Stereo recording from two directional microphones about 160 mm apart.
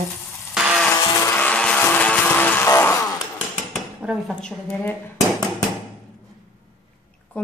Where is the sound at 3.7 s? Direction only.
5° right (ahead or behind).